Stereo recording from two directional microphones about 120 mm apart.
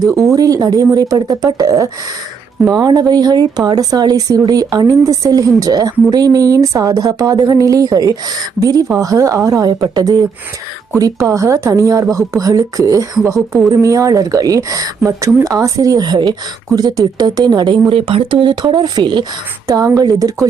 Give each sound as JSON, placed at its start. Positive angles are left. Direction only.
{"t": 0.1, "sound": "speech", "side_deg": -25}